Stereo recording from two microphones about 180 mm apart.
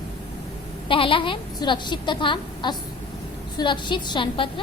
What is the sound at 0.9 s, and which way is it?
A woman's voice, 30° left (ahead or behind).